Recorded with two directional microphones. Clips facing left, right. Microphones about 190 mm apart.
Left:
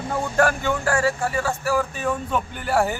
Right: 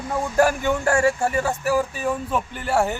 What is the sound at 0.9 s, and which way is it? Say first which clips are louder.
A man's voice: right 3 dB; 25° right (ahead or behind).